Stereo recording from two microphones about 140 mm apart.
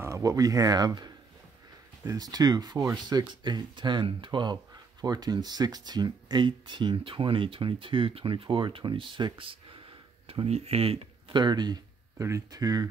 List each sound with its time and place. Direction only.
0.0 s speech: 20° right (ahead or behind)